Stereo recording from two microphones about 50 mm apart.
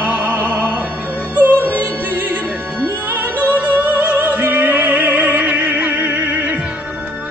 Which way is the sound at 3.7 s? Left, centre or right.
Right.